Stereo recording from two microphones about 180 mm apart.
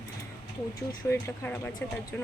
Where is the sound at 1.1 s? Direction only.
10° left (ahead or behind).